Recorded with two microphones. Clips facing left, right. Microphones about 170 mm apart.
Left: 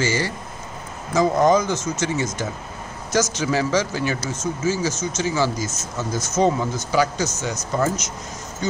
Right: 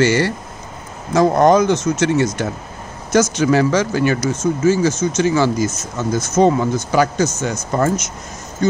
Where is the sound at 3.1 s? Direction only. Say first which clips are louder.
Right 7 dB; 55° right (ahead or behind).